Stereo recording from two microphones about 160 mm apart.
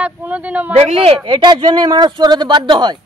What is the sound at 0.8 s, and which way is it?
Speech, 40° right (ahead or behind).